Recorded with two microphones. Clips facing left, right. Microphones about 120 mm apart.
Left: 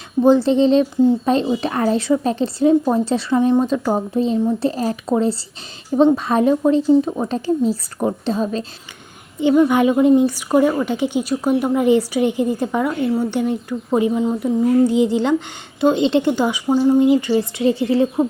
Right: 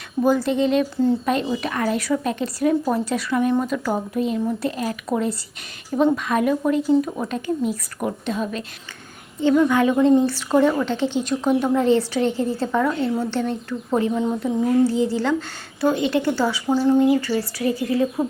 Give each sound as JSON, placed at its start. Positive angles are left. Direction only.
{"t": 0.2, "sound": "speech", "side_deg": 25}
{"t": 9.4, "sound": "a woman's voice", "side_deg": 15}
{"t": 14.8, "sound": "speech", "side_deg": 20}